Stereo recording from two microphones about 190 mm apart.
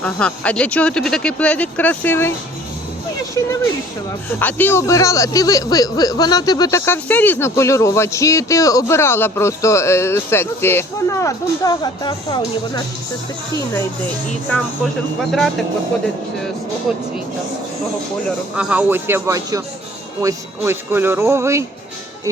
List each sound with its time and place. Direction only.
0.0 s speech: 5° left (ahead or behind)
3.4 s speech: 15° left (ahead or behind)
15.2 s speech: centre (ahead or behind)
18.5 s speech: 5° right (ahead or behind)